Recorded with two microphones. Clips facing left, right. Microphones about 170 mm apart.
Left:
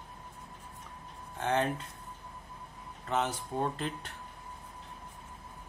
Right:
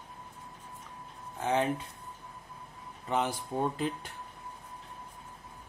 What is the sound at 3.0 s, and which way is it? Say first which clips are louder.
A man's voice: right 1 dB; 10° right (ahead or behind).